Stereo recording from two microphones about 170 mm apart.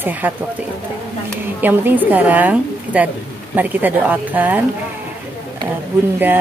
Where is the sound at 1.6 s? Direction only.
10° right (ahead or behind).